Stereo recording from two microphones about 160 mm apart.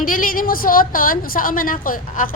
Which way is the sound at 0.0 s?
60° left (ahead or behind).